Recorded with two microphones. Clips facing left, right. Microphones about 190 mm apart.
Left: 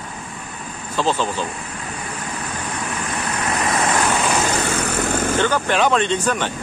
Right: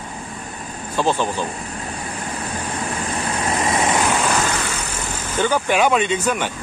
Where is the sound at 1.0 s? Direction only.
15° right (ahead or behind).